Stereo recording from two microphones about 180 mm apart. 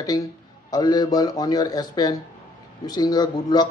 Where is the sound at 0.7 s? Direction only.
20° left (ahead or behind).